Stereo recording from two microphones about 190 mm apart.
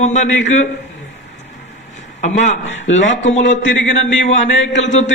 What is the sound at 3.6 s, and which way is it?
A man's voice, 75° left (ahead or behind).